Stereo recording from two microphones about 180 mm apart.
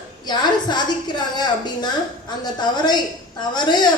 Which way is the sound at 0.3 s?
25° left (ahead or behind).